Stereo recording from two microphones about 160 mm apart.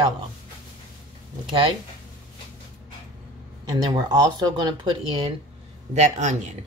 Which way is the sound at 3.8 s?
25° right (ahead or behind).